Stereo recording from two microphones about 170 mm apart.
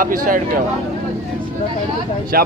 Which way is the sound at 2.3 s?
60° right (ahead or behind).